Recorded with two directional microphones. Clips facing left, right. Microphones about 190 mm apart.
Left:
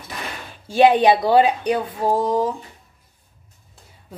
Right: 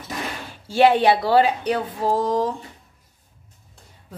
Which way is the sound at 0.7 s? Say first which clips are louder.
Left 2 dB; 15° left (ahead or behind).